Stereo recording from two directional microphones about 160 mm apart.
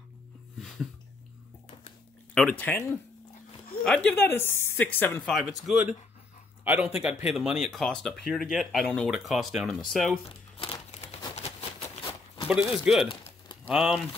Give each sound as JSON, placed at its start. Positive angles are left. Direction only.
{"t": 2.3, "sound": "speech", "side_deg": 5}
{"t": 5.3, "sound": "speech", "side_deg": 0}
{"t": 10.2, "sound": "crumpling", "side_deg": 35}
{"t": 12.4, "sound": "speech", "side_deg": -5}